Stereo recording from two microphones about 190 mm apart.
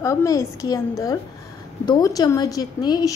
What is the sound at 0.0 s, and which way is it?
A woman's voice, 15° left (ahead or behind).